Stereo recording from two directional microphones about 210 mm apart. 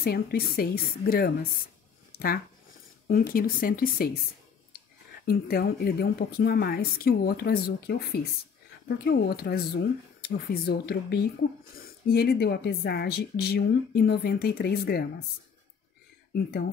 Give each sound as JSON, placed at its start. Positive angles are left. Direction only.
{"t": 0.0, "sound": "speech", "side_deg": 45}
{"t": 5.2, "sound": "speech", "side_deg": 45}